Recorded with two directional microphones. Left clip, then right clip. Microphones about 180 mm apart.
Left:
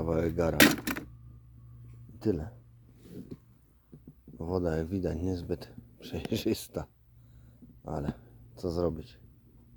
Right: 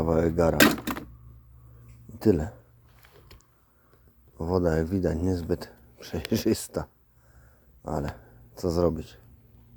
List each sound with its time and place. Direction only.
0.0 s speech: centre (ahead or behind)
0.5 s speech: 40° left (ahead or behind)
2.1 s speech: 15° right (ahead or behind)
4.4 s speech: 5° right (ahead or behind)
8.1 s speech: 5° right (ahead or behind)